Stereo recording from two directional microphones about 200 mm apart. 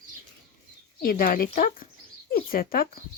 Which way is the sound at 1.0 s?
45° left (ahead or behind).